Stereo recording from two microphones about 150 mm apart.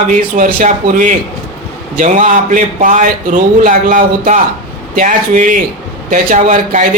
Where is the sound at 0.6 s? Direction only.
65° right (ahead or behind).